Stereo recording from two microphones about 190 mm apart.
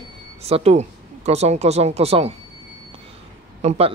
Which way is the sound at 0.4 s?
35° right (ahead or behind).